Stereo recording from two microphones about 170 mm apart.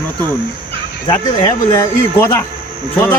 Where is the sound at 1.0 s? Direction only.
20° left (ahead or behind).